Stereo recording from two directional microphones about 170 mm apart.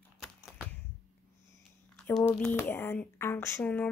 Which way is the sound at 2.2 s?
10° left (ahead or behind).